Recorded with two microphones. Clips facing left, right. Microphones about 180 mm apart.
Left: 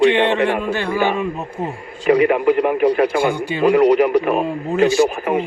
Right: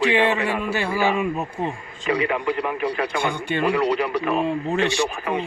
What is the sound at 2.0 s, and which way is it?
Speech, 50° left (ahead or behind).